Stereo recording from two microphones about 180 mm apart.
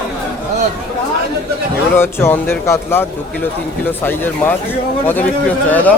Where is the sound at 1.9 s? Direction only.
15° left (ahead or behind).